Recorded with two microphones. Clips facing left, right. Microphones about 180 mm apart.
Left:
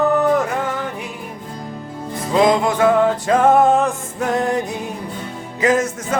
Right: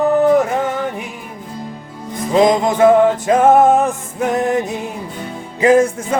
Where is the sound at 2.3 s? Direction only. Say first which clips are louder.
Right 3 dB; 20° right (ahead or behind).